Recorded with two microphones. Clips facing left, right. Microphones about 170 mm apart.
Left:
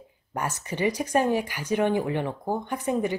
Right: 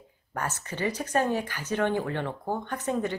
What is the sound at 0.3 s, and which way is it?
Speech, 15° left (ahead or behind).